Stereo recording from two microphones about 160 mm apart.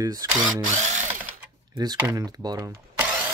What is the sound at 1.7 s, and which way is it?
Speech, 25° right (ahead or behind).